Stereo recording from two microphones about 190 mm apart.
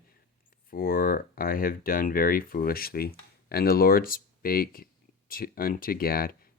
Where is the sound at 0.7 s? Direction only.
50° left (ahead or behind).